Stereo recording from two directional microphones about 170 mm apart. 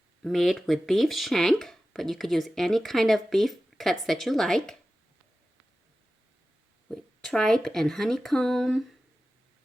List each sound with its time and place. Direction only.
0.2 s speech: centre (ahead or behind)
6.8 s speech: centre (ahead or behind)